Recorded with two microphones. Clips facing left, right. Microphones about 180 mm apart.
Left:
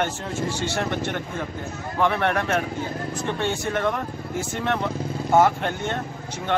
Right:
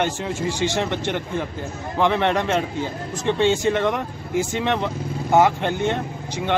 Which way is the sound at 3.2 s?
90° right.